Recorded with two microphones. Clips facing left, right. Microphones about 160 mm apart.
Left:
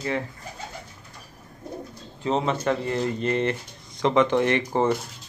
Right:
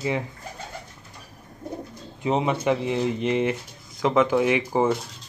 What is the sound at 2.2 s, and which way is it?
Speech, 15° right (ahead or behind).